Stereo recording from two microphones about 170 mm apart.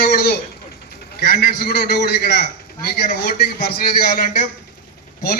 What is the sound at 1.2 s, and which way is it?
A man's voice, 65° left (ahead or behind).